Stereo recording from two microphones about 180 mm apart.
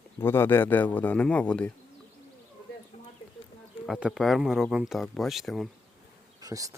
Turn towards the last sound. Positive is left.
turn(degrees=-20)  # may be behind; listen again after turning